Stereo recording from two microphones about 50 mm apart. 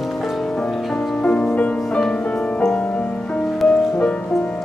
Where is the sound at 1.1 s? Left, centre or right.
Left.